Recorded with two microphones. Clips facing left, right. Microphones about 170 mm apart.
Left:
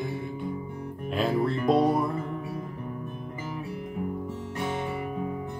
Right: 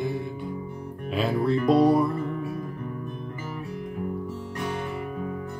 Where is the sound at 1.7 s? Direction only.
Centre (ahead or behind).